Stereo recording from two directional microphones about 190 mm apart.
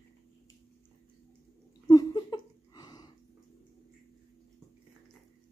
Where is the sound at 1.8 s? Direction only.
20° left (ahead or behind).